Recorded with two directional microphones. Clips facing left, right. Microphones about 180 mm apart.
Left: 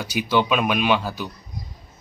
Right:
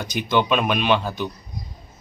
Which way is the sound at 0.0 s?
10° left (ahead or behind).